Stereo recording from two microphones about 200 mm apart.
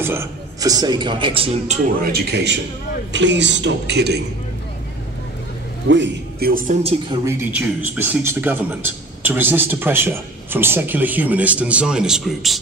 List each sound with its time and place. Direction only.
0.0 s a man's voice: 10° right (ahead or behind); by 1.8 s 25° right (ahead or behind)
2.1 s a man's voice: 55° right (ahead or behind)
5.9 s a man's voice: 65° right (ahead or behind)
6.5 s a man's voice: 35° right (ahead or behind)
7.2 s a man's voice: 10° right (ahead or behind)